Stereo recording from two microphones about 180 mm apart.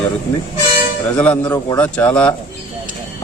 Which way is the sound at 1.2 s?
10° left (ahead or behind).